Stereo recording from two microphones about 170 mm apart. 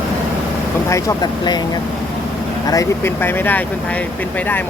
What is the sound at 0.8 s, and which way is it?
Speech, 20° left (ahead or behind).